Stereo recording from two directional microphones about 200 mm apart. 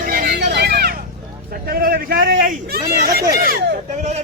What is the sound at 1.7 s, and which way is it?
A man's voice, 45° right (ahead or behind).